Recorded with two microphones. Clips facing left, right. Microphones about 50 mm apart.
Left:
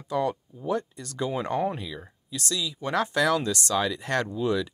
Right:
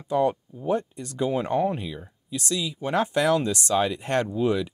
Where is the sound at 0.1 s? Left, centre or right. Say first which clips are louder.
Right 4 dB; right.